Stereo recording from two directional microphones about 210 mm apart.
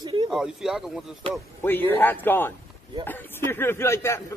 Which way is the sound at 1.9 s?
10° left (ahead or behind).